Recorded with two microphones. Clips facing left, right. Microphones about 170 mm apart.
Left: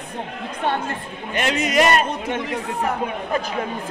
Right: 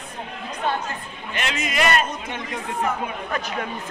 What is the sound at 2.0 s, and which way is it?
Speech, 60° left (ahead or behind).